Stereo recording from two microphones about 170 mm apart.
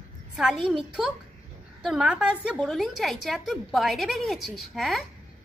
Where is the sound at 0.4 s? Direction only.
Centre (ahead or behind).